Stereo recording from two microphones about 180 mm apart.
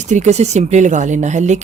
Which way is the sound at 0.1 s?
40° right (ahead or behind).